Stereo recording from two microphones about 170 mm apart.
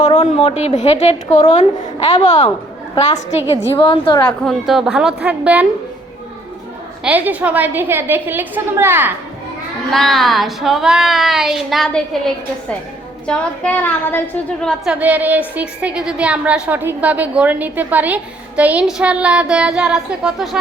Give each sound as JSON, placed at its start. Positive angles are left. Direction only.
{"t": 0.0, "sound": "a woman's voice", "side_deg": 35}
{"t": 3.8, "sound": "a woman's voice", "side_deg": 30}
{"t": 4.3, "sound": "child singing", "side_deg": 0}
{"t": 7.0, "sound": "a woman's voice", "side_deg": -10}
{"t": 9.9, "sound": "child singing", "side_deg": 0}
{"t": 13.2, "sound": "a woman's voice", "side_deg": 5}
{"t": 14.6, "sound": "child singing", "side_deg": 5}
{"t": 14.9, "sound": "a woman's voice", "side_deg": -10}